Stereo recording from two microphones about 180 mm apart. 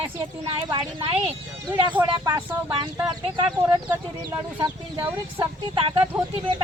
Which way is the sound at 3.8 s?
10° right (ahead or behind).